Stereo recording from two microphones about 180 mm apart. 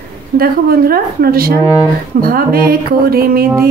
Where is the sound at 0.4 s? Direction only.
55° right (ahead or behind).